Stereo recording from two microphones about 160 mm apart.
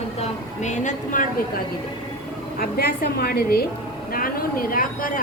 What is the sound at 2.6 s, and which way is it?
A woman's voice, 70° left (ahead or behind).